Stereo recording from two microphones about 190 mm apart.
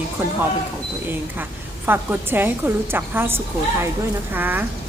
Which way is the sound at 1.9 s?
10° right (ahead or behind).